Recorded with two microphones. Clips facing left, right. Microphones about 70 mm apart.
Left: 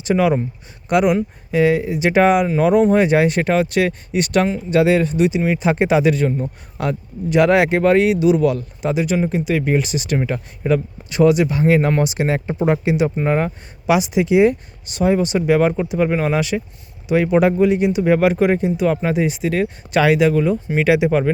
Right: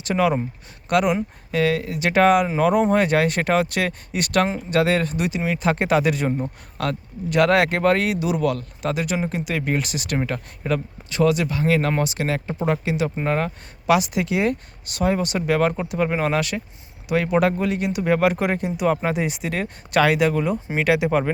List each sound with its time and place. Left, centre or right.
0.1 s speech: centre
5.5 s speech: centre
6.7 s speech: centre